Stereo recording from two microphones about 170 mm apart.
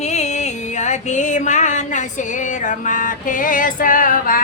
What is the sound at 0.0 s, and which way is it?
Music, 40° left (ahead or behind).